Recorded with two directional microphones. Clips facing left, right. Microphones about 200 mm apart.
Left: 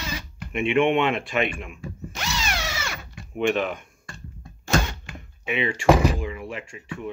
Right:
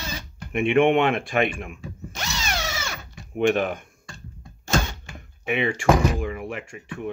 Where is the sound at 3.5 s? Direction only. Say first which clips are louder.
Even; 50° right (ahead or behind).